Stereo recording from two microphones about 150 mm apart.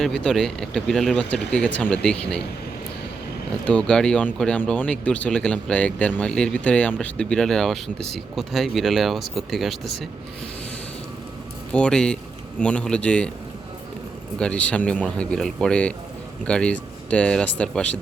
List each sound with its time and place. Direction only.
0.0 s speech: 5° left (ahead or behind)
3.7 s speech: 5° left (ahead or behind)
11.7 s speech: 5° left (ahead or behind)
14.3 s speech: 5° left (ahead or behind)